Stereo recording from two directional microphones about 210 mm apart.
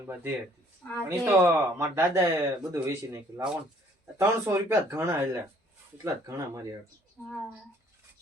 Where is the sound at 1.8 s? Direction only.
15° right (ahead or behind).